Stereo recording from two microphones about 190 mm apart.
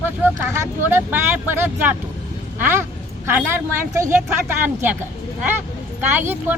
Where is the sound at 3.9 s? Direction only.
15° right (ahead or behind).